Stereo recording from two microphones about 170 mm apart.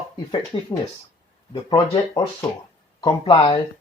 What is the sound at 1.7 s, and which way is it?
Speech, 25° left (ahead or behind).